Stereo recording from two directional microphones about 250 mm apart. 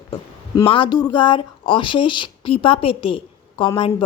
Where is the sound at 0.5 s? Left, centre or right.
Left.